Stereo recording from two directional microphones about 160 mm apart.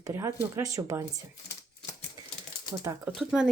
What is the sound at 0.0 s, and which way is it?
Speech, 20° right (ahead or behind).